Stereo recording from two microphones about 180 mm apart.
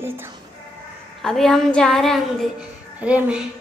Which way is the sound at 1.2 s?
Centre (ahead or behind).